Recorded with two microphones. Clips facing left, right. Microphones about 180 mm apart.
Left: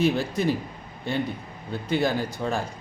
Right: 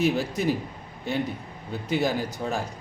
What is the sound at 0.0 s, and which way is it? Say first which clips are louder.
Speech: left 1 dB; 5° right (ahead or behind).